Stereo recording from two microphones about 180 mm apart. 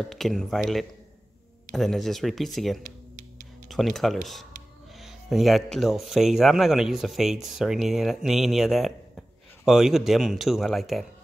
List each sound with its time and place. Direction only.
0.1 s speech: centre (ahead or behind)